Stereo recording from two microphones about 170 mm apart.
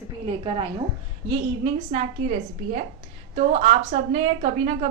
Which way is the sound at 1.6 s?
40° right (ahead or behind).